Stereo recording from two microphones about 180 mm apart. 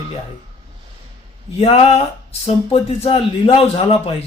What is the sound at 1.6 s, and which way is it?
A man's voice, 30° left (ahead or behind).